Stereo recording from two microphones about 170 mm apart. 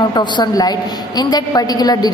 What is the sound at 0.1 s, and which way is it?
A woman's voice, 25° left (ahead or behind).